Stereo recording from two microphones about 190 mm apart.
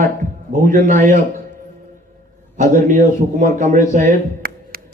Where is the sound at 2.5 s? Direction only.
40° right (ahead or behind).